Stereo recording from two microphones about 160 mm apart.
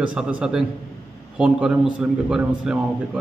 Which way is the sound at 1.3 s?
5° right (ahead or behind).